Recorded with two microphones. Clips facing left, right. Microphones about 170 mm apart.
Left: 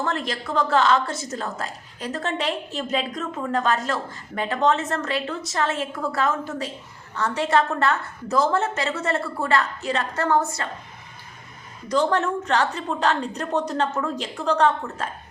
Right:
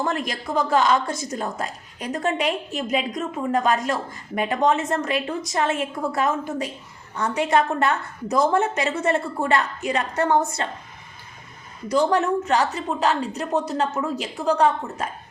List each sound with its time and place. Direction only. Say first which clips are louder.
0.0 s a woman's voice: right 1 dB; 15° right (ahead or behind)
11.9 s a woman's voice: right 2 dB; 10° right (ahead or behind)